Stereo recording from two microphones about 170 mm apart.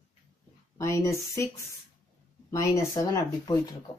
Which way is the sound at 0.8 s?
15° left (ahead or behind).